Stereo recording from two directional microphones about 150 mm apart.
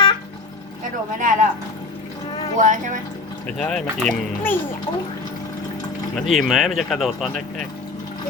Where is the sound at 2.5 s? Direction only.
60° right (ahead or behind).